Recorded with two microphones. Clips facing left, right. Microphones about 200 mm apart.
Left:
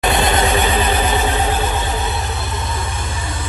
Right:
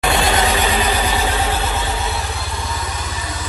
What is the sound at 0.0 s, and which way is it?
Vehicle, 20° left (ahead or behind).